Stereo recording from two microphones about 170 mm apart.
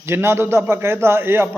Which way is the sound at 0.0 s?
15° right (ahead or behind).